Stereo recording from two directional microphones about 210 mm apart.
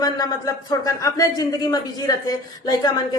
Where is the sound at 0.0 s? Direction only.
20° left (ahead or behind).